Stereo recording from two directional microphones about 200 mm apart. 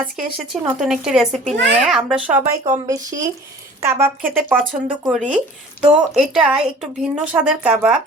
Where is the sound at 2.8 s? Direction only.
15° right (ahead or behind).